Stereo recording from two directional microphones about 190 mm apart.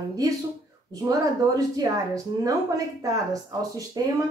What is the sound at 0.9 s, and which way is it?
Speech, 20° right (ahead or behind).